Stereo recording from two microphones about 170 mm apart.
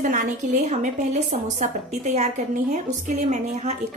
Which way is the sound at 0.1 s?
45° right (ahead or behind).